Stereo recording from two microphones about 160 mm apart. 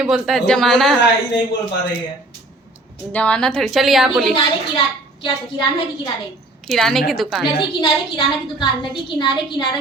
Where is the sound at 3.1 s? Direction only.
5° left (ahead or behind).